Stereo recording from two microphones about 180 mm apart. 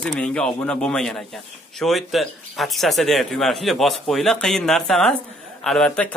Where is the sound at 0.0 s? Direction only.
5° left (ahead or behind).